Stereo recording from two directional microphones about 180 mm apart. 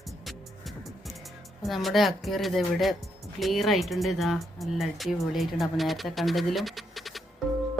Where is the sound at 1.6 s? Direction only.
Centre (ahead or behind).